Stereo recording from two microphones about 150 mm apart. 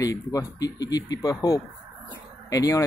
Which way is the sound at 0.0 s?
20° left (ahead or behind).